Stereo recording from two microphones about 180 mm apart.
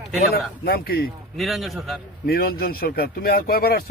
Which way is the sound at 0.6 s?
60° left (ahead or behind).